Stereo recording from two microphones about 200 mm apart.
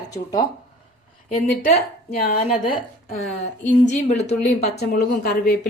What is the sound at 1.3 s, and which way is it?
Speech, 50° left (ahead or behind).